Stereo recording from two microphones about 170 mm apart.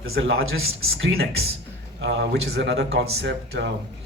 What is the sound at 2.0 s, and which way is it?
Speech, 85° right.